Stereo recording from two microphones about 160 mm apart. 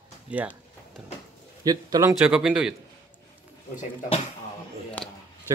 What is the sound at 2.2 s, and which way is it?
Speech, 5° right (ahead or behind).